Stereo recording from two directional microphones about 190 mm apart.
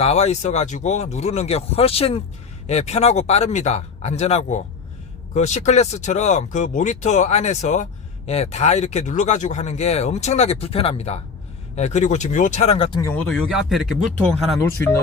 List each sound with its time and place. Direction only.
0.0 s speech: 35° left (ahead or behind)
13.1 s speech: 5° left (ahead or behind)